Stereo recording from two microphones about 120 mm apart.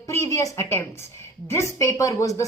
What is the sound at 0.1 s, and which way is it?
A woman's voice, 25° left (ahead or behind).